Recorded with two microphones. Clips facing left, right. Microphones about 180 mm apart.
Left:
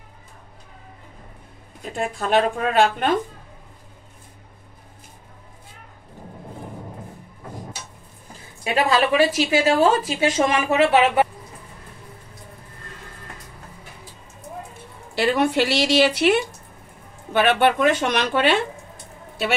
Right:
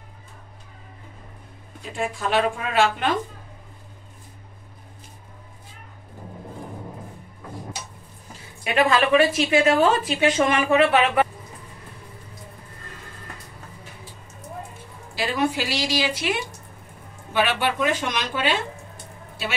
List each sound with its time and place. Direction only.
2.1 s a woman's voice: 55° left (ahead or behind)
8.6 s a woman's voice: 30° left (ahead or behind)
15.1 s speech: 65° left (ahead or behind)
17.3 s speech: 55° left (ahead or behind)